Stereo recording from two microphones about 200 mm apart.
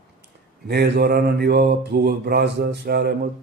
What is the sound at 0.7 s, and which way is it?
Mantra, 50° right (ahead or behind).